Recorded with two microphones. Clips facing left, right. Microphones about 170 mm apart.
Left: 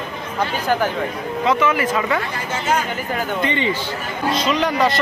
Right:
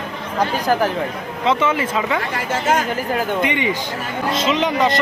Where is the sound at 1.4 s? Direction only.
25° right (ahead or behind).